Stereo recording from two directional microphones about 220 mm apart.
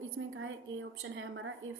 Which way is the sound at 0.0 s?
65° right (ahead or behind).